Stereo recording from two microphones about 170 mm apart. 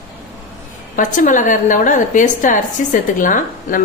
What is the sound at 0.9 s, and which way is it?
A woman's voice, 50° left (ahead or behind).